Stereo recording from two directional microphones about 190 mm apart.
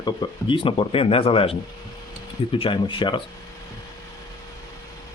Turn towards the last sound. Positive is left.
turn(degrees=25)  # may be behind; listen again after turning